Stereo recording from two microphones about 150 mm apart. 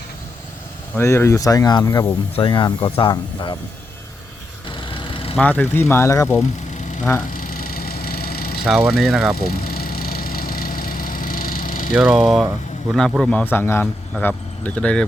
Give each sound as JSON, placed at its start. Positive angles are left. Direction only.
{"t": 0.9, "sound": "speech", "side_deg": 15}
{"t": 2.3, "sound": "speech", "side_deg": 30}
{"t": 4.9, "sound": "vehicle", "side_deg": 35}
{"t": 5.4, "sound": "speech", "side_deg": 10}
{"t": 7.3, "sound": "vehicle", "side_deg": 70}
{"t": 8.9, "sound": "speech", "side_deg": 0}
{"t": 9.6, "sound": "vehicle", "side_deg": 80}
{"t": 11.9, "sound": "speech", "side_deg": -5}
{"t": 13.4, "sound": "a man's voice", "side_deg": 15}